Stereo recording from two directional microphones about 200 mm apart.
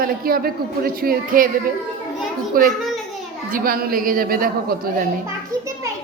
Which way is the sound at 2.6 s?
45° right (ahead or behind).